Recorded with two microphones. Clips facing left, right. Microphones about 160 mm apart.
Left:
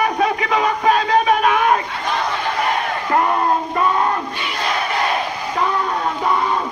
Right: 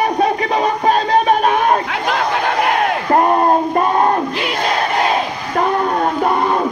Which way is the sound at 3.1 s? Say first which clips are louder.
Right 4 dB; 40° right (ahead or behind).